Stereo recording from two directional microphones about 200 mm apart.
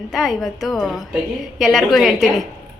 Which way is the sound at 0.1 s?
Centre (ahead or behind).